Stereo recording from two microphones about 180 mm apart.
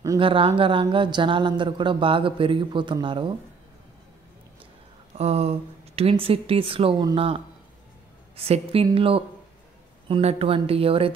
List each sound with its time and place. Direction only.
0.2 s speech: 30° right (ahead or behind)
5.1 s speech: 35° right (ahead or behind)